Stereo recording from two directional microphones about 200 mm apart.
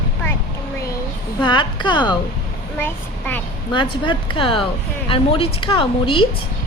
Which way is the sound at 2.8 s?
10° left (ahead or behind).